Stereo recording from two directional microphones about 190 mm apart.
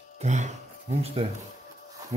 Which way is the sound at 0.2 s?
40° right (ahead or behind).